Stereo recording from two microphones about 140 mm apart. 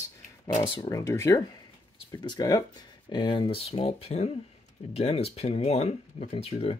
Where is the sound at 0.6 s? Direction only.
35° left (ahead or behind).